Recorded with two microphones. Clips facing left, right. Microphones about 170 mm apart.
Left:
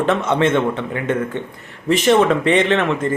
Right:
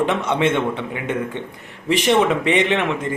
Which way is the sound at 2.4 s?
15° right (ahead or behind).